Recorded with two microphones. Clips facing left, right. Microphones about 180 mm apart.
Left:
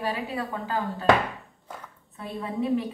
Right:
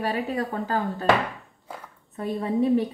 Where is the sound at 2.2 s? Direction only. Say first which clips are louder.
Right 6 dB; 40° right (ahead or behind).